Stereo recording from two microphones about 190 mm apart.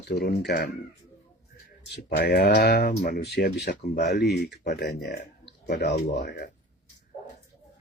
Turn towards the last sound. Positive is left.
turn(degrees=60)  # may be behind; listen again after turning